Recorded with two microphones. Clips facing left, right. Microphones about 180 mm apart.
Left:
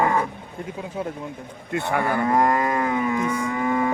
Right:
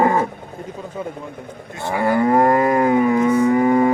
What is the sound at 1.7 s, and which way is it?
Cattle, 65° left (ahead or behind).